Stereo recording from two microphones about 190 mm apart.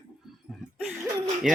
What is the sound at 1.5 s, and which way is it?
Speech, 5° right (ahead or behind).